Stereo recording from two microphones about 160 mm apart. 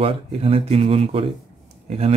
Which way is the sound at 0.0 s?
40° right (ahead or behind).